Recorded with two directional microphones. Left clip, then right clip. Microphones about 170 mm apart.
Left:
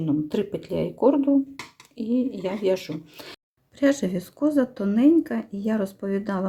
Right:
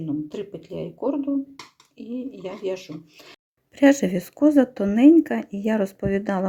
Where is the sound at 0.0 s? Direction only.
20° left (ahead or behind).